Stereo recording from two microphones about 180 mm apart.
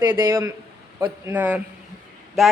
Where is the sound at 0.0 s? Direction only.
15° right (ahead or behind).